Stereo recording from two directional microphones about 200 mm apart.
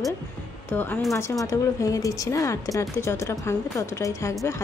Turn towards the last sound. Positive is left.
turn(degrees=15)  # may be behind; listen again after turning